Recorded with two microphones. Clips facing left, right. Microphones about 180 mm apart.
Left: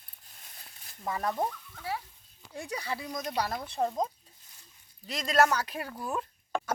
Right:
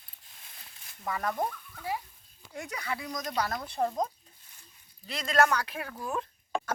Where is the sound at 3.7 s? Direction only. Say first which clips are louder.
Even; centre (ahead or behind).